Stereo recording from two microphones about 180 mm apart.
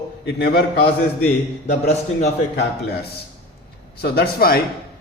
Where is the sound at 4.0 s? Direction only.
60° left (ahead or behind).